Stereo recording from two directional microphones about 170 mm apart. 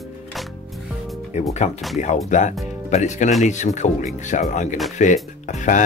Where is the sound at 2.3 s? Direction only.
45° left (ahead or behind).